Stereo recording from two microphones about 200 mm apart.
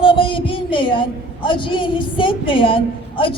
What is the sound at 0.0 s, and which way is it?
A woman's voice, 25° left (ahead or behind).